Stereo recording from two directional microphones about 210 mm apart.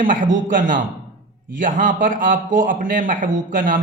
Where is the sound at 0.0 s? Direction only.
40° right (ahead or behind).